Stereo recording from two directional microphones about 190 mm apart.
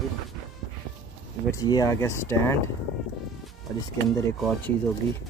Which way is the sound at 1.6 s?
20° left (ahead or behind).